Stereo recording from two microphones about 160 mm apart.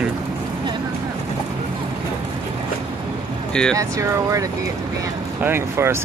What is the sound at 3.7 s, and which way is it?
Speech, 20° right (ahead or behind).